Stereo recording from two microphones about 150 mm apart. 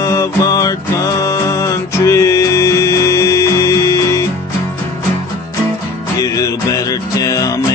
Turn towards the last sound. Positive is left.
turn(degrees=25)  # may be behind; listen again after turning